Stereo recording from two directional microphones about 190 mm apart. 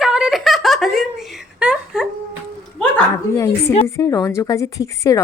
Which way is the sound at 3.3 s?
15° left (ahead or behind).